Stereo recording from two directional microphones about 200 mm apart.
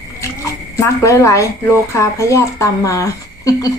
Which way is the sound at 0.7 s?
15° left (ahead or behind).